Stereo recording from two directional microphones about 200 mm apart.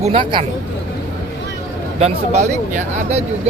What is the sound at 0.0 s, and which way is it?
Speech, 25° right (ahead or behind).